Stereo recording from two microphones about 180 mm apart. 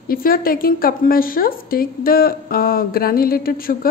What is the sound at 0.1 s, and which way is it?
A woman's voice, 55° left (ahead or behind).